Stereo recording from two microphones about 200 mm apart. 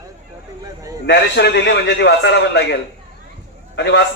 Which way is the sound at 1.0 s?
60° left (ahead or behind).